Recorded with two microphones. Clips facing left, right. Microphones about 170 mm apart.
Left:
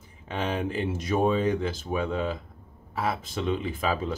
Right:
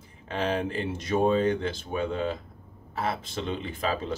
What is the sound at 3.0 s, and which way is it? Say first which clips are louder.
Speech: left 1 dB; 25° right (ahead or behind).